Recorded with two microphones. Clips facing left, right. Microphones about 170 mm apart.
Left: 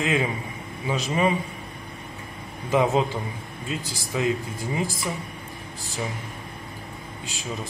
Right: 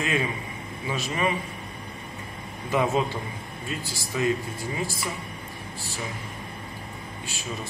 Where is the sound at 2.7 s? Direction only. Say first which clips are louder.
Left 3 dB; 20° left (ahead or behind).